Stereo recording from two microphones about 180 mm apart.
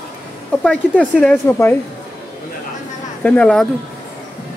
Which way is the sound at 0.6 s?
5° left (ahead or behind).